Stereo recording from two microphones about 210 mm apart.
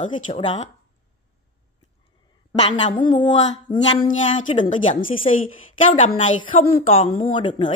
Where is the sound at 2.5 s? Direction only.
20° left (ahead or behind).